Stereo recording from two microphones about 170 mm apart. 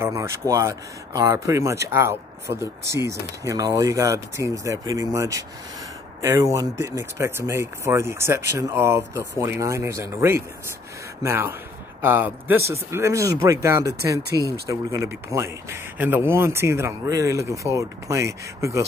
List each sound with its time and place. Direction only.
0.0 s speech: 15° right (ahead or behind)